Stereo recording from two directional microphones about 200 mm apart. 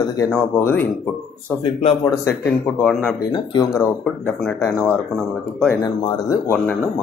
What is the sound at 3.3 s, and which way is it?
Speech, 20° left (ahead or behind).